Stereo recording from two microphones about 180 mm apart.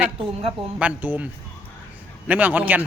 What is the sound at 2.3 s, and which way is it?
Speech, 10° right (ahead or behind).